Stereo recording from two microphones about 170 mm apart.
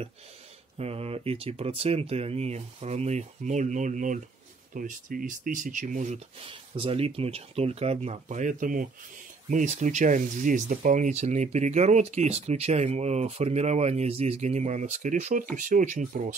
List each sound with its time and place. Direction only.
0.7 s speech: 35° right (ahead or behind)